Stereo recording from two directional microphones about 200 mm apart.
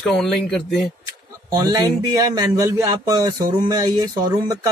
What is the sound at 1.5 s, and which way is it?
Speech, 20° right (ahead or behind).